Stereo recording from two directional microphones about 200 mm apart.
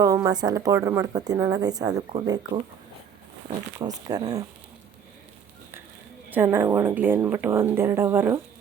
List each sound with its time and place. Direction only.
0.0 s a woman's voice: 15° right (ahead or behind)
3.8 s speech: 20° right (ahead or behind)
6.3 s a woman's voice: 10° right (ahead or behind)